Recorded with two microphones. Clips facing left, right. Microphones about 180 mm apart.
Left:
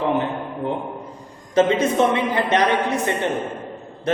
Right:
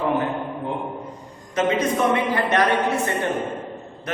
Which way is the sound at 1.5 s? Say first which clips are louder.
Left 4 dB; 25° left (ahead or behind).